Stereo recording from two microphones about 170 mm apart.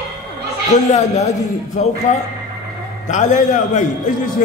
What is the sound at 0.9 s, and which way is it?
Speech, 40° left (ahead or behind).